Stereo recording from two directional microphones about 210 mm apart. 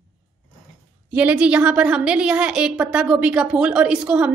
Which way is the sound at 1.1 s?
5° right (ahead or behind).